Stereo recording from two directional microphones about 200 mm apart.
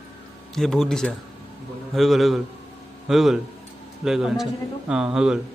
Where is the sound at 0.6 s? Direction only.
Centre (ahead or behind).